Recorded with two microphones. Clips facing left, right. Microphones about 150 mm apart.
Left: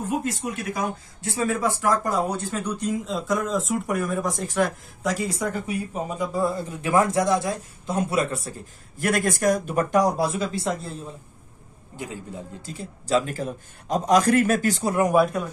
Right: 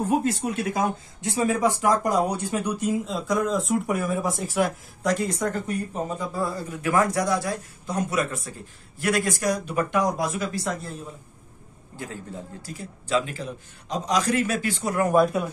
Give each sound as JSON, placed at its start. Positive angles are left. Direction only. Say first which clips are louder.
{"t": 0.1, "sound": "speech", "louder": "right 2 dB", "side_deg": -30}
{"t": 9.0, "sound": "speech", "louder": "left 2 dB", "side_deg": 50}
{"t": 12.0, "sound": "a man's voice", "louder": "left 1 dB", "side_deg": 15}
{"t": 12.7, "sound": "a man's voice", "louder": "left 2 dB", "side_deg": 40}
{"t": 15.1, "sound": "speech", "louder": "right 2 dB", "side_deg": 0}